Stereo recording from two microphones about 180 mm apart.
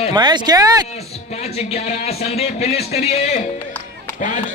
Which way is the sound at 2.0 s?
35° left (ahead or behind).